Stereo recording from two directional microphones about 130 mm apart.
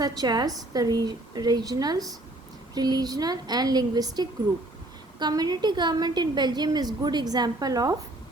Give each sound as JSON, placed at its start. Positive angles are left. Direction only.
{"t": 0.0, "sound": "a woman's voice", "side_deg": -30}